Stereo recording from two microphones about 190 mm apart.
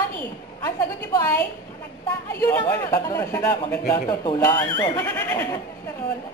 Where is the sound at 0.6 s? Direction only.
20° left (ahead or behind).